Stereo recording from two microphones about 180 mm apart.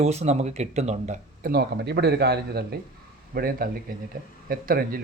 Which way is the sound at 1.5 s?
65° right (ahead or behind).